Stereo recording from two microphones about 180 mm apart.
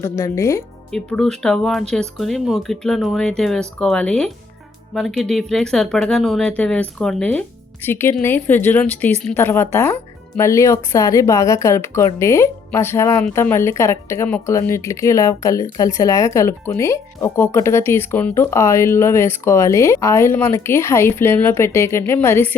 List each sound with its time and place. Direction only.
0.0 s speech: 15° left (ahead or behind)
0.9 s speech: 5° left (ahead or behind)